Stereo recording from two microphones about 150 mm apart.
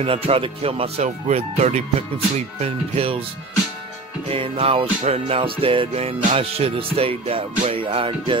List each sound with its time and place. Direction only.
0.0 s speech: 40° right (ahead or behind)
4.3 s speech: 40° right (ahead or behind)